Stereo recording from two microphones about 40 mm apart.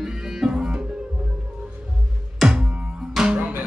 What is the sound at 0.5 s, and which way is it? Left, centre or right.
Music, centre.